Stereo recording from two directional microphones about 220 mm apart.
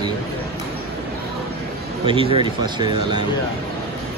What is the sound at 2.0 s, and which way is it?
Speech, 25° right (ahead or behind).